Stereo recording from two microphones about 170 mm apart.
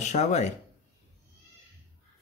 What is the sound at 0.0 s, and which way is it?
Speech, 45° left (ahead or behind).